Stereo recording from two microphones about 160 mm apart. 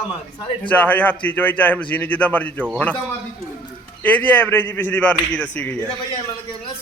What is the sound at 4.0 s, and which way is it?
Speech, 10° left (ahead or behind).